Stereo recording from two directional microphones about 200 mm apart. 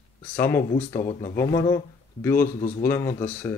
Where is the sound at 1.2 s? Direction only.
45° left (ahead or behind).